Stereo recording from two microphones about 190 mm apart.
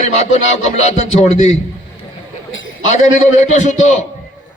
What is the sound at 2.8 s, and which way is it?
Music, 40° left (ahead or behind).